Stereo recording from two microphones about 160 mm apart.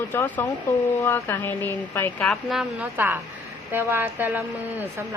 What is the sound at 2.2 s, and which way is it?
Speech, centre (ahead or behind).